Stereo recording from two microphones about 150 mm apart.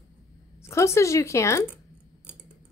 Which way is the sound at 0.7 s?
20° left (ahead or behind).